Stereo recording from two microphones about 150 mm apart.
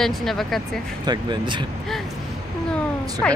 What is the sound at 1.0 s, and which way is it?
Speech, 30° right (ahead or behind).